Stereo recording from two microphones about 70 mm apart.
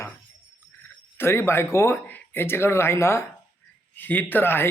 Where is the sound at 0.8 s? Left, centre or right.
Left.